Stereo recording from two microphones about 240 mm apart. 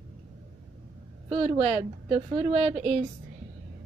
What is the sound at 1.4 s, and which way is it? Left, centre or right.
Speech, right.